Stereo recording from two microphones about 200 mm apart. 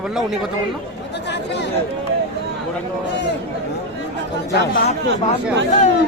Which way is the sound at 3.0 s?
60° left (ahead or behind).